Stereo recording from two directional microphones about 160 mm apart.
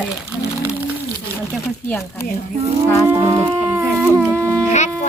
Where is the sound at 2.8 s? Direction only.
15° left (ahead or behind).